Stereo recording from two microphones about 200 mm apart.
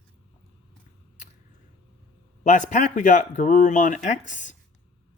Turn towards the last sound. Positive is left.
turn(degrees=40)  # may be behind; listen again after turning